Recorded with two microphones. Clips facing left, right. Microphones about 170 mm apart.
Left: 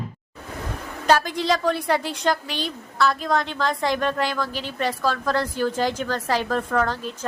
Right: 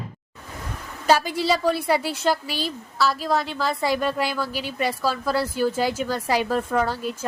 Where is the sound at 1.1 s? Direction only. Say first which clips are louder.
Even; 10° right (ahead or behind).